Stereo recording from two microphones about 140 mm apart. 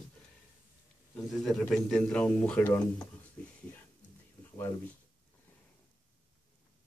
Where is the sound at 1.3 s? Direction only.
Centre (ahead or behind).